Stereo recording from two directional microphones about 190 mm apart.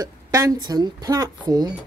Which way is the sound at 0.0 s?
15° right (ahead or behind).